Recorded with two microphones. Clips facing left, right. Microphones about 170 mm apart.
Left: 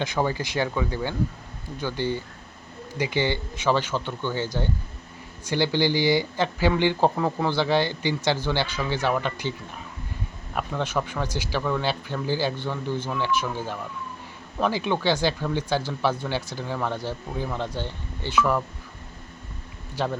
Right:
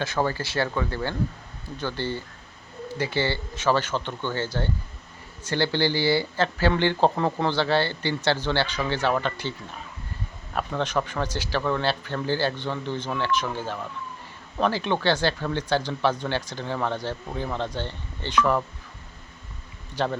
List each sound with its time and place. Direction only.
0.0 s speech: 15° left (ahead or behind)
20.0 s speech: 10° left (ahead or behind)